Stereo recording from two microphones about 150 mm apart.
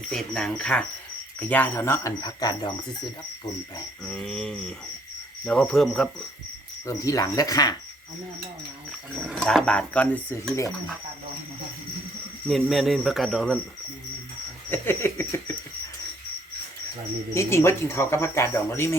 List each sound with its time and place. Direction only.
0.1 s speech: 5° left (ahead or behind); by 2.7 s 25° left (ahead or behind)
4.0 s speech: 5° left (ahead or behind)
6.8 s speech: 20° left (ahead or behind)
9.1 s speech: centre (ahead or behind); by 10.7 s 15° left (ahead or behind)
12.5 s speech: centre (ahead or behind)
14.7 s speech: 15° left (ahead or behind)
17.3 s speech: 20° left (ahead or behind)